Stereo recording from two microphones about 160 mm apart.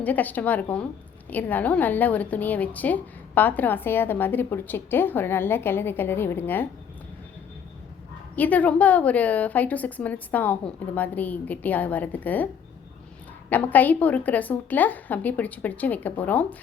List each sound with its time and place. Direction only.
0.0 s a woman's voice: 10° left (ahead or behind)
8.4 s a woman's voice: 10° left (ahead or behind)
13.5 s a woman's voice: 10° left (ahead or behind)